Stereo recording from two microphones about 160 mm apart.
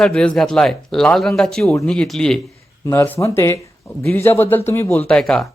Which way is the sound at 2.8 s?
15° left (ahead or behind).